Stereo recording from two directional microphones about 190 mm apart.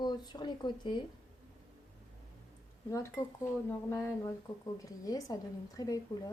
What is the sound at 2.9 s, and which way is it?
Speech, 15° left (ahead or behind).